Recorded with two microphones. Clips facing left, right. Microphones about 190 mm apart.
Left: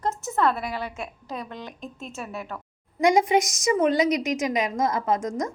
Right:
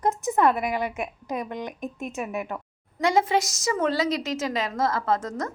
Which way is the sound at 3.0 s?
15° left (ahead or behind).